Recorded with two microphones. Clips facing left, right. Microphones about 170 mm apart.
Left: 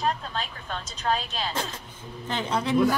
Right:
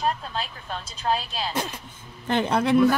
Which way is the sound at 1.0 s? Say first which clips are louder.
Right 1 dB; 10° right (ahead or behind).